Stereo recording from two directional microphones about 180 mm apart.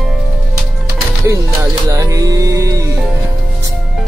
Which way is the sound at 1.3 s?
15° right (ahead or behind).